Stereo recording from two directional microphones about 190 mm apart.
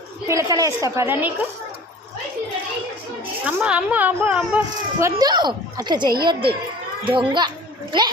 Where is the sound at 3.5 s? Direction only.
5° right (ahead or behind).